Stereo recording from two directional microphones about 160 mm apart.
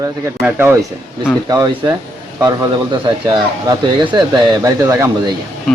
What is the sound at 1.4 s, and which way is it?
Speech, 25° right (ahead or behind).